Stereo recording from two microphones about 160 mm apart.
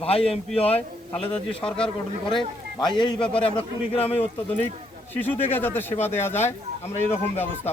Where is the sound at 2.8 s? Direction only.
30° left (ahead or behind).